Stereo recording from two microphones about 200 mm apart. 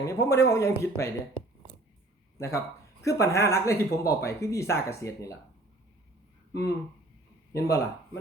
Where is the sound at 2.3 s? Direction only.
15° left (ahead or behind).